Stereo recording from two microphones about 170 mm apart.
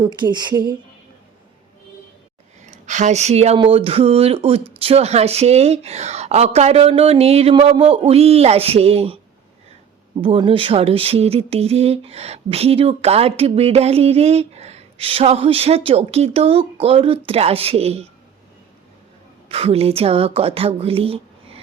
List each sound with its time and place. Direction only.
0.0 s speech: 25° right (ahead or behind)
2.6 s speech: 45° right (ahead or behind)
10.2 s speech: 30° right (ahead or behind)
19.5 s speech: 35° right (ahead or behind)